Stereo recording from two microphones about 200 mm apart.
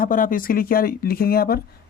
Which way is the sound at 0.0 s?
45° left (ahead or behind).